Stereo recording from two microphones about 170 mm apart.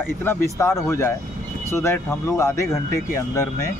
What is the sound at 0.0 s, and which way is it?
Speech, 15° left (ahead or behind).